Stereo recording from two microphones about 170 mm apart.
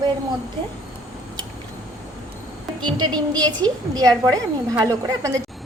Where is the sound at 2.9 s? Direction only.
25° right (ahead or behind).